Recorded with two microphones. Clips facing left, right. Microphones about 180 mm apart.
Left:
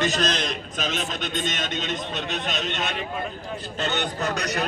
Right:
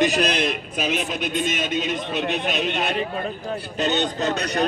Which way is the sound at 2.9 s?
40° right (ahead or behind).